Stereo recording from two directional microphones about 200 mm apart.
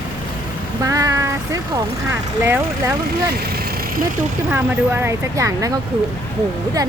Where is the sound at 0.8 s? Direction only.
15° right (ahead or behind).